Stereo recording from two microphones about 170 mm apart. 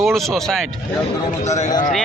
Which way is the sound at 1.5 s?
40° left (ahead or behind).